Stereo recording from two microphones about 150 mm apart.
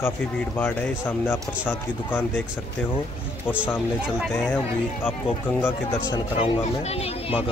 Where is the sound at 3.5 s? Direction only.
5° right (ahead or behind).